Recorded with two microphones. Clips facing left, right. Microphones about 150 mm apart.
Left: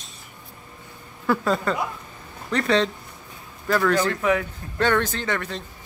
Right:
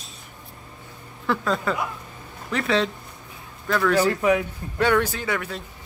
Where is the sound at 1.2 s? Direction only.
5° left (ahead or behind).